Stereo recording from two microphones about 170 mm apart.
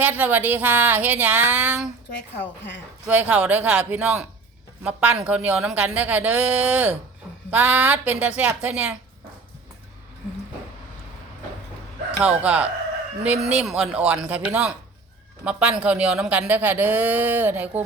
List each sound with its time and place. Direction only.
0.0 s speech: 10° right (ahead or behind)
2.0 s speech: 90° left
3.1 s speech: 10° right (ahead or behind)
12.2 s a man's voice: 10° right (ahead or behind)